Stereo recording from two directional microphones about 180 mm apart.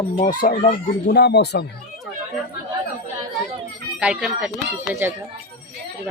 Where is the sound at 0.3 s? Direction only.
50° left (ahead or behind); by 1.6 s 70° left (ahead or behind).